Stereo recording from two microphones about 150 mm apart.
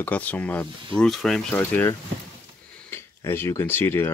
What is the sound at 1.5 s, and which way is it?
Speech, 15° left (ahead or behind).